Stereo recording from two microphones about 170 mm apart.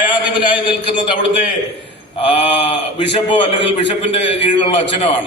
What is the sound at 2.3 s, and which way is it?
A man's voice, 40° left (ahead or behind).